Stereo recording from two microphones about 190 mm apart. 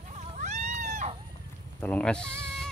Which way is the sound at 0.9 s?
35° right (ahead or behind).